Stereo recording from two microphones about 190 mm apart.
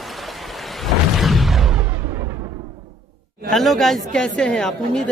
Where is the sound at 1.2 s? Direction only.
Centre (ahead or behind).